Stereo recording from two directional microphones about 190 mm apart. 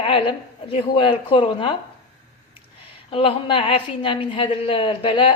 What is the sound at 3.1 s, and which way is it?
A woman's voice, 30° left (ahead or behind).